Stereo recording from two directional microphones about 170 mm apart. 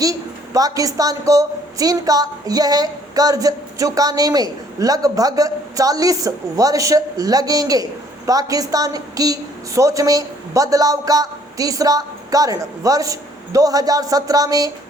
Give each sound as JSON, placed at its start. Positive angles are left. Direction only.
{"t": 0.0, "sound": "a woman's voice", "side_deg": -20}